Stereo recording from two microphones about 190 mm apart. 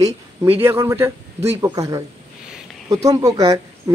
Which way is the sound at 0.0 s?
15° right (ahead or behind).